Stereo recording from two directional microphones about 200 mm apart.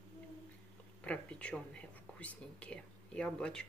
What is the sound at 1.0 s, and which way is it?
Speech, 5° left (ahead or behind).